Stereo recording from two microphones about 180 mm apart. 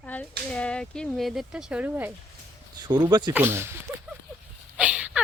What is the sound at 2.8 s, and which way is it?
Speech, 25° right (ahead or behind).